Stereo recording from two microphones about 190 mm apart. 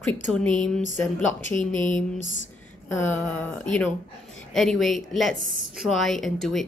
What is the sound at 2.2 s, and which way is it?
Speech, 85° left.